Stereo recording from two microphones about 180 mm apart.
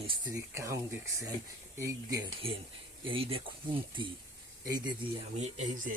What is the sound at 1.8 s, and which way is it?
Speech, 15° right (ahead or behind).